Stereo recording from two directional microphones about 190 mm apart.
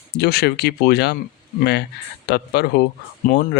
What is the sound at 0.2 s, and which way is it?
Speech, 55° left (ahead or behind).